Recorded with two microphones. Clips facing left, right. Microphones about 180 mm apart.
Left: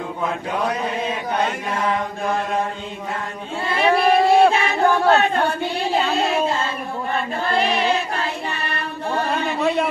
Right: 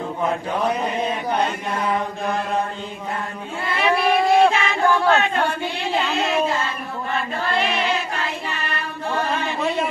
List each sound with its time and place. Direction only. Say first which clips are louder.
3.6 s a sound: left 3 dB; 30° left (ahead or behind)
5.9 s speech: left 2 dB; 35° left (ahead or behind)
7.4 s music: left 3 dB; 35° left (ahead or behind)